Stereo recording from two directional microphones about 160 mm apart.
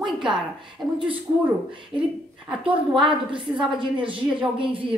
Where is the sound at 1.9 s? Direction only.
10° right (ahead or behind).